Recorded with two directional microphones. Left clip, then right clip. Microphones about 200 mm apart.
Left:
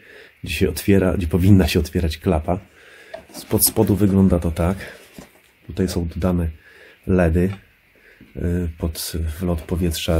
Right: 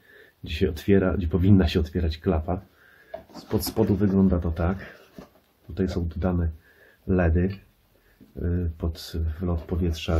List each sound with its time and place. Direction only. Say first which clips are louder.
0.4 s speech: left 5 dB; 35° left (ahead or behind)